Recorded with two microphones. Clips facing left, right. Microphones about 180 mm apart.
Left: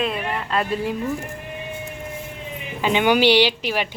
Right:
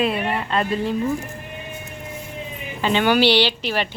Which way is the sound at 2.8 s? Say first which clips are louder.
Even; 15° left (ahead or behind).